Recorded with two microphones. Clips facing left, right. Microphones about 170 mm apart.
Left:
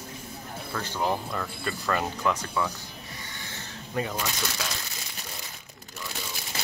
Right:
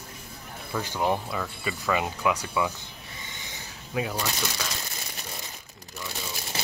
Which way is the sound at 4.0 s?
5° right (ahead or behind).